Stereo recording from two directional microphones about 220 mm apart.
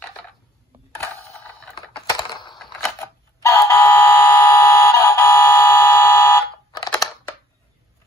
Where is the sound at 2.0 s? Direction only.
20° left (ahead or behind).